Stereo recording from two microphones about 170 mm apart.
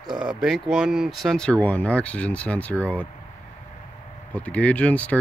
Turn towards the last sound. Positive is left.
turn(degrees=10)  # may be behind; listen again after turning